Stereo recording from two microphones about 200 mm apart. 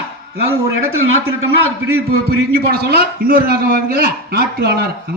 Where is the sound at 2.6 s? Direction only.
50° right (ahead or behind).